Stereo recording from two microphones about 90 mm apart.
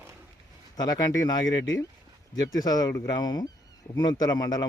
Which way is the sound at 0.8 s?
45° left (ahead or behind).